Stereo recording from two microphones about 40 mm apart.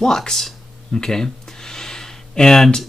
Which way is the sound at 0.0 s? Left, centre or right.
Centre.